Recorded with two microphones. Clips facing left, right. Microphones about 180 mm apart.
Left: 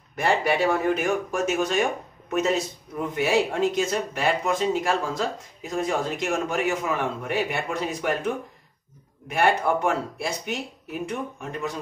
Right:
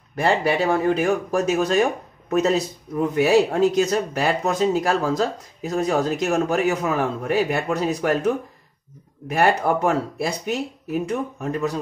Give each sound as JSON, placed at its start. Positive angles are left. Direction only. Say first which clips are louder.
{"t": 0.2, "sound": "speech", "louder": "right 2 dB", "side_deg": -35}
{"t": 9.3, "sound": "speech", "louder": "right 3 dB", "side_deg": -40}